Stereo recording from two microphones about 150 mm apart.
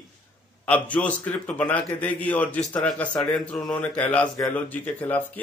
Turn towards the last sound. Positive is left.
turn(degrees=10)  # may be behind; listen again after turning